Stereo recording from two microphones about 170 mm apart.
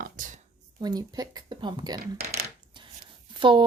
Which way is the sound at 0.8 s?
20° right (ahead or behind).